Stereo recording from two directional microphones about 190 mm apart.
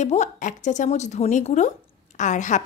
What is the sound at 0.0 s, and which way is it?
A woman's voice, 35° left (ahead or behind).